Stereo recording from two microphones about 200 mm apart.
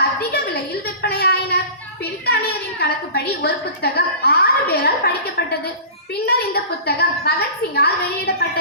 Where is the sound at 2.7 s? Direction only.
55° left (ahead or behind).